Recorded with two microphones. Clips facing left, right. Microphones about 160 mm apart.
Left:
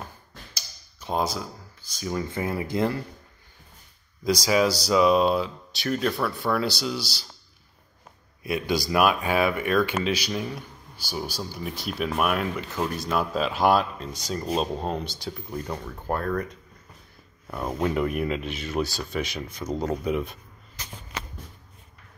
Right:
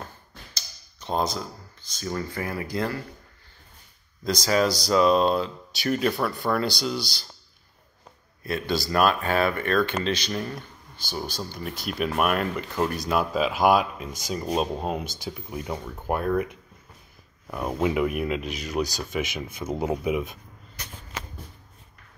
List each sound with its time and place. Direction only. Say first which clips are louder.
0.6 s a sound: even; 10° left (ahead or behind)
2.2 s speech: left 2 dB; 20° left (ahead or behind)
4.2 s speech: left 1 dB; 10° left (ahead or behind)
8.5 s speech: left 1 dB; 15° left (ahead or behind)
11.8 s speech: right 1 dB; centre (ahead or behind)